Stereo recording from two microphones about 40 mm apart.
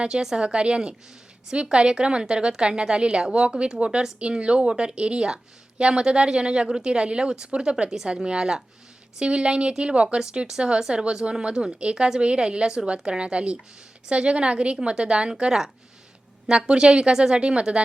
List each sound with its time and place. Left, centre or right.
0.0 s a woman's voice: centre
0.4 s a woman's voice: right
10.2 s a woman's voice: centre